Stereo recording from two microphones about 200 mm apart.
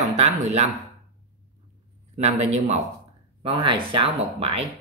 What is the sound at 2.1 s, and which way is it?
Speech, 30° right (ahead or behind).